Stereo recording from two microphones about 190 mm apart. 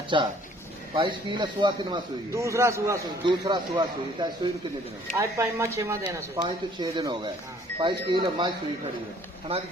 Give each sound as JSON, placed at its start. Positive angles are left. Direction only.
{"t": 0.1, "sound": "speech", "side_deg": -25}